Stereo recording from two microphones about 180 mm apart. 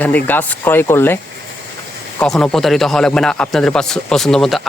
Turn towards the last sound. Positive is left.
turn(degrees=0)  # may be behind; listen again after turning